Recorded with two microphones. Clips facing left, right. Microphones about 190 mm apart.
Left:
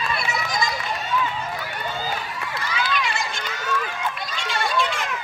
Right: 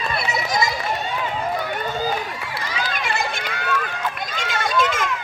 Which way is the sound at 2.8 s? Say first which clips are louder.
Right 1 dB; 45° right (ahead or behind).